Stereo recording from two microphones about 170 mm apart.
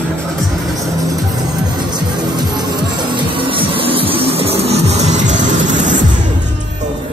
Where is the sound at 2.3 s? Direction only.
25° right (ahead or behind); by 5.9 s 45° right (ahead or behind).